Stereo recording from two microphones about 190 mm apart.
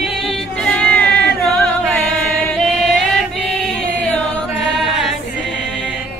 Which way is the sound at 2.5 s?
5° left (ahead or behind).